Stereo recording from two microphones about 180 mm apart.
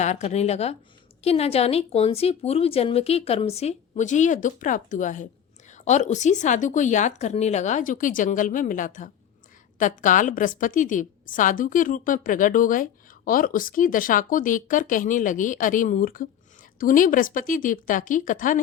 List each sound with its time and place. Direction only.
0.0 s a woman's voice: 40° left (ahead or behind)